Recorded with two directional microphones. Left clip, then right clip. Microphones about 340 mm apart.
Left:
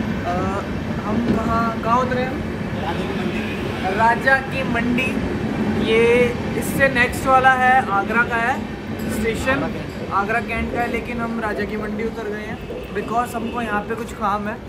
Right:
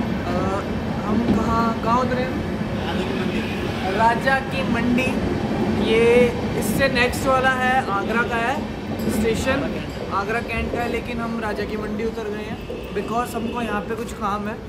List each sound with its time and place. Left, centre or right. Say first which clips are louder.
1.9 s speech: left 3 dB; centre
4.0 s speech: left 3 dB; centre
10.1 s speech: left 3 dB; centre